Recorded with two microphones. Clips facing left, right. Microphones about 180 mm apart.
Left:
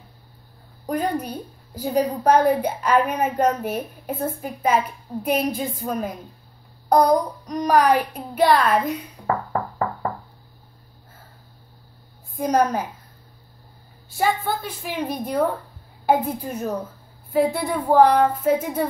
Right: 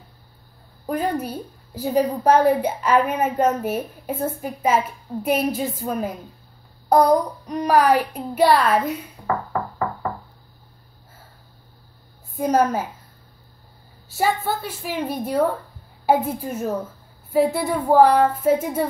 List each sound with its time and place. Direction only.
0.8 s a woman's voice: 5° right (ahead or behind)
12.4 s a child's voice: 5° right (ahead or behind)
14.1 s a woman's voice: 5° right (ahead or behind)